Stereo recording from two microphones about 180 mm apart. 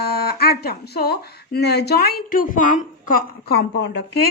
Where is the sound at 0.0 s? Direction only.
60° left (ahead or behind).